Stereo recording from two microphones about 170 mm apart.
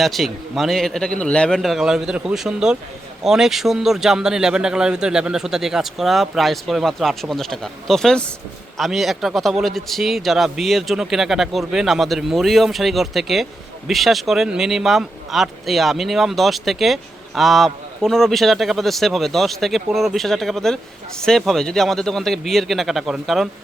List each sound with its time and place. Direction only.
0.0 s a man's voice: centre (ahead or behind)